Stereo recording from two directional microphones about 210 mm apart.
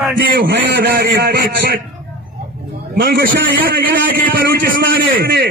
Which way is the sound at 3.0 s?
45° right (ahead or behind).